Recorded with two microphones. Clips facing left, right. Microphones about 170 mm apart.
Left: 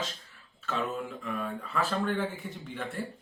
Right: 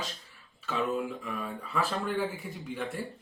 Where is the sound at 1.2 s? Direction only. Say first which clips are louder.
Left 2 dB; centre (ahead or behind).